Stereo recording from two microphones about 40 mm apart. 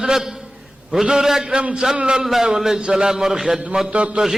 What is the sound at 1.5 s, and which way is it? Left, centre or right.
Speech, right.